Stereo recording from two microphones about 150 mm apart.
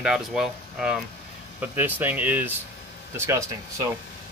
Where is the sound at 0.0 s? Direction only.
5° right (ahead or behind); by 3.5 s 20° right (ahead or behind).